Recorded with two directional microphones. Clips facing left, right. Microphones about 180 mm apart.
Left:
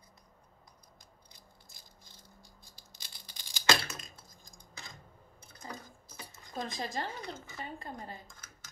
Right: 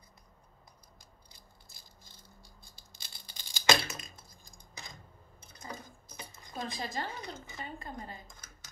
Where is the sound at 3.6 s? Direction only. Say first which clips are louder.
Right 2 dB; 15° right (ahead or behind).